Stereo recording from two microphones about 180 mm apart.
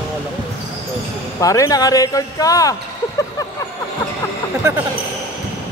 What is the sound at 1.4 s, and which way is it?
Speech, 20° left (ahead or behind).